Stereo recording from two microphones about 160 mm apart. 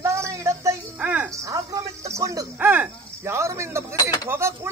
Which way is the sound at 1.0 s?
5° right (ahead or behind).